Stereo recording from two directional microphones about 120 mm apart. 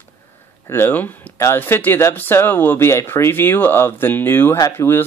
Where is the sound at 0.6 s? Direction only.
20° left (ahead or behind).